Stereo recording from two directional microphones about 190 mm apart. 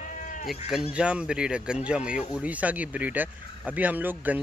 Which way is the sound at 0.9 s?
5° right (ahead or behind).